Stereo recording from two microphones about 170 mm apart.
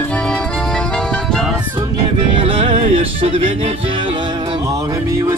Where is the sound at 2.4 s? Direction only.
30° right (ahead or behind).